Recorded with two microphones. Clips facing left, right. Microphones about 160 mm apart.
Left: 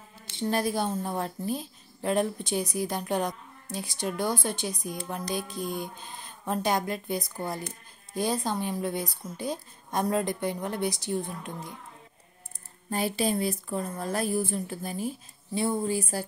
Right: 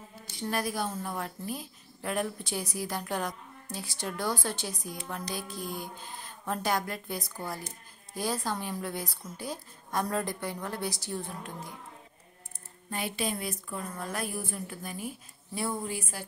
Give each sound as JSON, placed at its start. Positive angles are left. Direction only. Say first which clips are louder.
{"t": 0.4, "sound": "speech", "louder": "left 4 dB", "side_deg": 25}
{"t": 12.9, "sound": "a woman's voice", "louder": "left 6 dB", "side_deg": 35}